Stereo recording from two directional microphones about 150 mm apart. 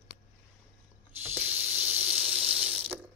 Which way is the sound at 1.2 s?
10° right (ahead or behind).